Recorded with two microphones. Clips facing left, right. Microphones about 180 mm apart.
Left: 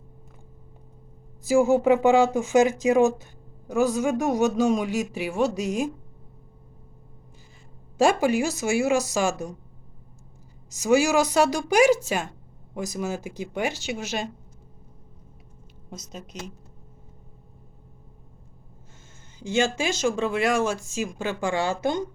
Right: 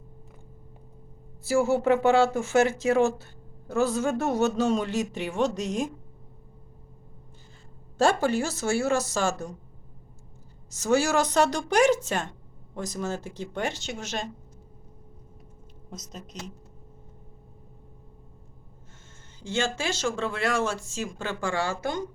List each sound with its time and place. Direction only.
1.5 s speech: 15° left (ahead or behind)
7.9 s speech: 10° left (ahead or behind)
10.7 s speech: 10° left (ahead or behind)
15.9 s a woman's voice: centre (ahead or behind)
19.4 s speech: 15° left (ahead or behind)